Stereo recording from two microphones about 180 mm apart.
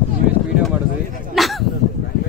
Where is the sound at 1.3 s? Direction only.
Centre (ahead or behind).